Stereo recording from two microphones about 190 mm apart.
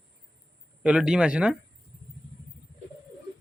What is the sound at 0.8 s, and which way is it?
Speech, 5° right (ahead or behind).